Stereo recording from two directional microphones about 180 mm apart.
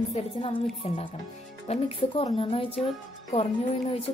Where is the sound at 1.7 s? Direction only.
35° left (ahead or behind).